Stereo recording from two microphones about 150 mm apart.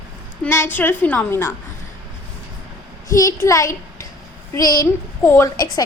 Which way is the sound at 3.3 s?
20° left (ahead or behind).